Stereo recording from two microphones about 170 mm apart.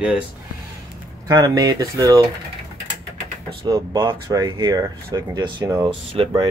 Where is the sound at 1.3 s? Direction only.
25° right (ahead or behind).